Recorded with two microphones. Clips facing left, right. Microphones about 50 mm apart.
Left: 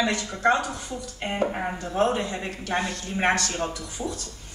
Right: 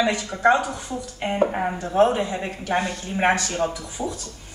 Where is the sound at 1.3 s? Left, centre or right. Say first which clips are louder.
Right 4 dB; centre.